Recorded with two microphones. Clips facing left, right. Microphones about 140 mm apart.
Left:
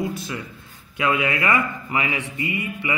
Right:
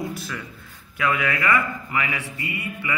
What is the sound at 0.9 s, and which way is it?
A man's voice, 25° left (ahead or behind).